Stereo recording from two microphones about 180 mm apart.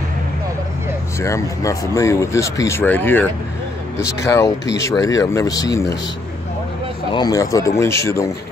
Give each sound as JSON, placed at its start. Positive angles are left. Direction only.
{"t": 1.2, "sound": "speech", "side_deg": 15}
{"t": 7.1, "sound": "speech", "side_deg": 20}